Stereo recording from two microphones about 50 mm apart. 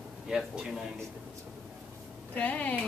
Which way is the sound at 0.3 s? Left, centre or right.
Centre.